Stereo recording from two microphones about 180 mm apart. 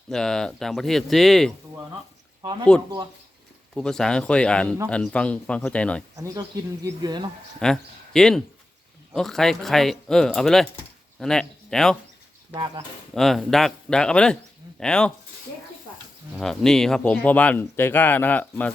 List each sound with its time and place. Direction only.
0.1 s speech: 5° left (ahead or behind)
2.4 s speech: 25° right (ahead or behind)
3.8 s speech: 5° left (ahead or behind)
6.1 s speech: 20° right (ahead or behind)
7.6 s speech: 5° left (ahead or behind)
13.1 s speech: centre (ahead or behind)
16.4 s speech: 5° left (ahead or behind)